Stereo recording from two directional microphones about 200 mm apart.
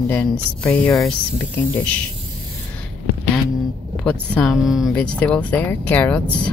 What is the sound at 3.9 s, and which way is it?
Speech, 5° left (ahead or behind).